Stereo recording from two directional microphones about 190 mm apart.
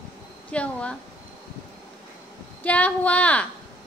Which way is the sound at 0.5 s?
5° left (ahead or behind).